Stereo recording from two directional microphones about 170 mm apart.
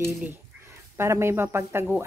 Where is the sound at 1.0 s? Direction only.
15° right (ahead or behind).